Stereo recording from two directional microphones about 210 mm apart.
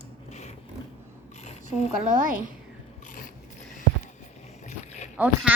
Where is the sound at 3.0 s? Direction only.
40° left (ahead or behind).